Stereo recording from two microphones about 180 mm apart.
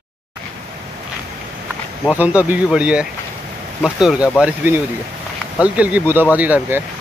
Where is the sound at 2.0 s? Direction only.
5° right (ahead or behind).